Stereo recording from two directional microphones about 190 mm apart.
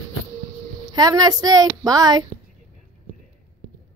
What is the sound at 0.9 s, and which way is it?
A woman's voice, 20° right (ahead or behind).